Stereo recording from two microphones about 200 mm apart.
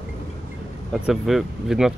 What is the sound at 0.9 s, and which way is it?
Speech, 5° right (ahead or behind).